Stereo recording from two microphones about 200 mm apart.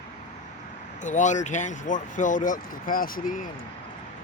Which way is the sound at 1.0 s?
40° left (ahead or behind).